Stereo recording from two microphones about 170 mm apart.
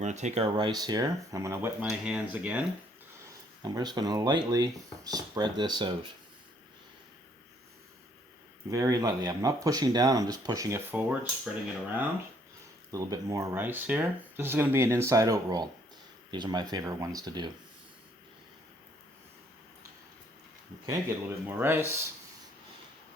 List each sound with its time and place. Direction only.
0.0 s speech: 45° right (ahead or behind)
0.5 s speech: 25° right (ahead or behind)
1.9 s speech: 5° right (ahead or behind)
3.6 s speech: 25° right (ahead or behind)
8.7 s speech: 20° right (ahead or behind)
12.9 s speech: 20° right (ahead or behind)
20.8 s speech: 15° right (ahead or behind)